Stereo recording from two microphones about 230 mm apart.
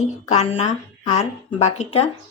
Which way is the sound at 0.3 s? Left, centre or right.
Left.